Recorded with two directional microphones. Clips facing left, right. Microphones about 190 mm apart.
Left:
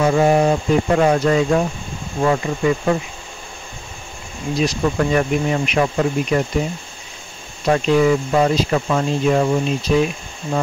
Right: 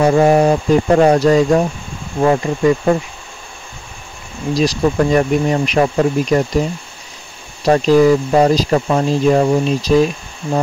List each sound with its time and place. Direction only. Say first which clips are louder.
0.0 s speech: right 4 dB; 40° right (ahead or behind)
4.6 s speech: right 4 dB; 35° right (ahead or behind)
7.6 s speech: right 5 dB; 35° right (ahead or behind)